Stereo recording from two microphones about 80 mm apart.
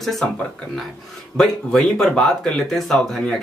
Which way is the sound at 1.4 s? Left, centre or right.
Centre.